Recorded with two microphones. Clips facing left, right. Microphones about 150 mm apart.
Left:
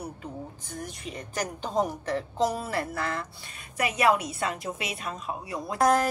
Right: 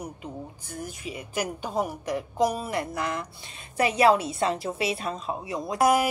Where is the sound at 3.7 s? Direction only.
30° right (ahead or behind).